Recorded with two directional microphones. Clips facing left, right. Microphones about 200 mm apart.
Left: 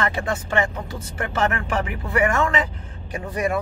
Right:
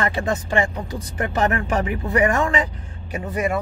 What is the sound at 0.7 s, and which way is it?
Speech, 15° right (ahead or behind).